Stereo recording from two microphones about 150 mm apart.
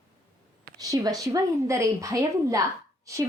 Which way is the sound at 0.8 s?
25° right (ahead or behind).